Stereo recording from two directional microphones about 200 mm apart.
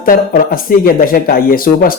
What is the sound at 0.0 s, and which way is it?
Speech, 45° left (ahead or behind).